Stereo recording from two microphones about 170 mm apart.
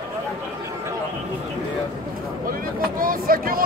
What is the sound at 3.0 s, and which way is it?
Vehicle, 55° right (ahead or behind).